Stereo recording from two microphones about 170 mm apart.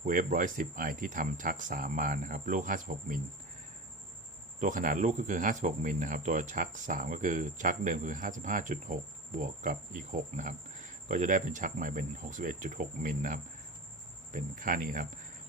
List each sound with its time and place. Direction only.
0.0 s speech: 50° right (ahead or behind)
4.6 s speech: 50° right (ahead or behind)